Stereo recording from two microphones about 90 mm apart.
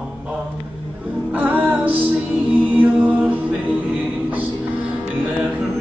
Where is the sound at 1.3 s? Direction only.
20° right (ahead or behind).